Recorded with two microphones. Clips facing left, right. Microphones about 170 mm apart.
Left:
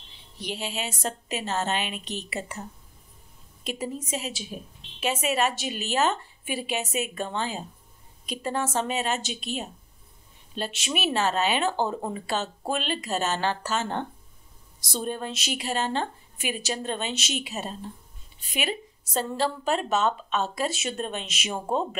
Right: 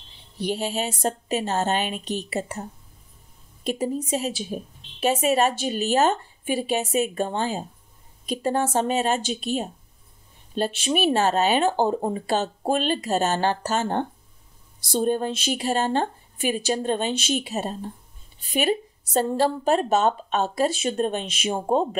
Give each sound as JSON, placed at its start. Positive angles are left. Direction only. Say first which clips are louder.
{"t": 0.5, "sound": "speech", "louder": "right 6 dB", "side_deg": -40}